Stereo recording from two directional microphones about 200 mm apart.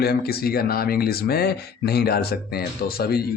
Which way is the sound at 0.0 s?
50° left (ahead or behind).